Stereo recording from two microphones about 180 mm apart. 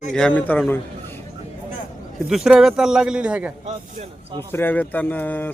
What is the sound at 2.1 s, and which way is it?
A man's voice, centre (ahead or behind).